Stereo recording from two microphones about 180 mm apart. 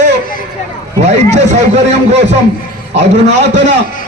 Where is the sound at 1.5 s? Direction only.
40° right (ahead or behind).